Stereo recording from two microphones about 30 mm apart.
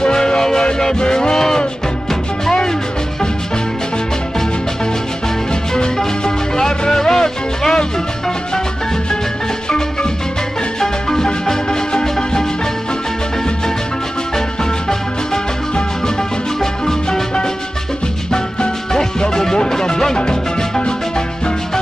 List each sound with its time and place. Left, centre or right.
0.0 s music: left
5.5 s music: left
10.8 s music: centre
14.6 s music: centre
19.3 s music: left
20.2 s music: left